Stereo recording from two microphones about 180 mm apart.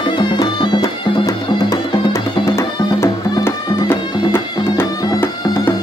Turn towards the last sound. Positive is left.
turn(degrees=15)  # may be behind; listen again after turning